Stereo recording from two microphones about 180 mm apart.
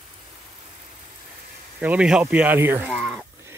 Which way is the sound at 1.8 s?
5° right (ahead or behind).